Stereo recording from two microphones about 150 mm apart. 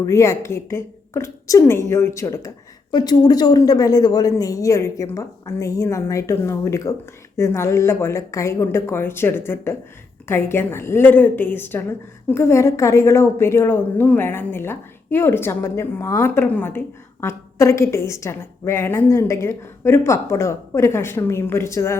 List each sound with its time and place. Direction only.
0.0 s a woman's voice: 20° left (ahead or behind)